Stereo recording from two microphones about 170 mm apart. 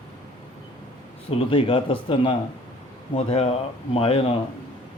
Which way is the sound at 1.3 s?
35° left (ahead or behind).